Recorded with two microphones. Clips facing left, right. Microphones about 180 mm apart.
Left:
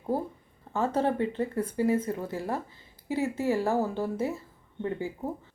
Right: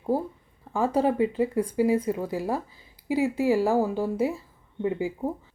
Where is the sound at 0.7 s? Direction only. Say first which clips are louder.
Right 3 dB; 10° right (ahead or behind).